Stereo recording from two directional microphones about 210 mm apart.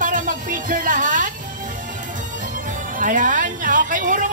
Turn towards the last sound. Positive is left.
turn(degrees=-40)  # may be behind; listen again after turning